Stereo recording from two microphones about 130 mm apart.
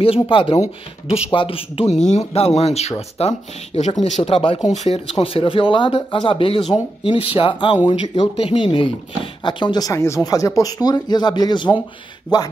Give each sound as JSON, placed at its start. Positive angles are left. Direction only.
{"t": 0.0, "sound": "speech", "side_deg": 45}